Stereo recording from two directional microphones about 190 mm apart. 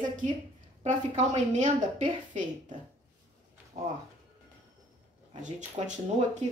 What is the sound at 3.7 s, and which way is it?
Speech, 35° right (ahead or behind).